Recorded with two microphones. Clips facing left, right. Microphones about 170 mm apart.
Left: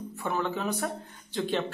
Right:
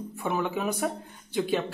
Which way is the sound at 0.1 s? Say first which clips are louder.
Right 2 dB; 10° right (ahead or behind).